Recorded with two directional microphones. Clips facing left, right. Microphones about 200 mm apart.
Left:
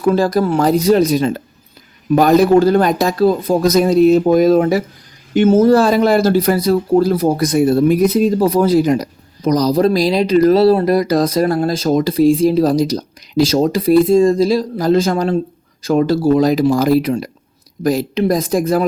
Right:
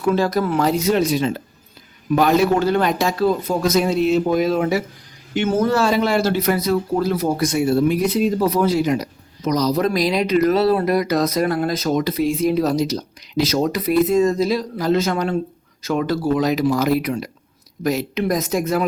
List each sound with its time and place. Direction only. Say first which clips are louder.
0.0 s speech: left 4 dB; 35° left (ahead or behind)